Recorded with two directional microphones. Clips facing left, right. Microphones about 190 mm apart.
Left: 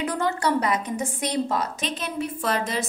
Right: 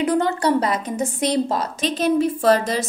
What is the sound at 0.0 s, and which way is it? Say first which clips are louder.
A woman's voice: right 6 dB; 30° right (ahead or behind).